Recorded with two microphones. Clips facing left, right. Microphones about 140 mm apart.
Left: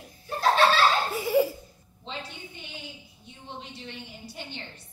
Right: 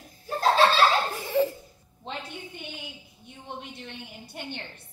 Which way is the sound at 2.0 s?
55° right (ahead or behind).